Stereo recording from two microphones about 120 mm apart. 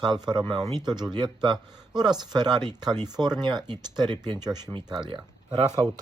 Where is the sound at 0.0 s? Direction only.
40° right (ahead or behind).